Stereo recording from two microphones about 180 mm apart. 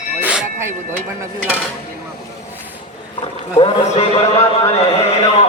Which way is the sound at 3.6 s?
35° left (ahead or behind).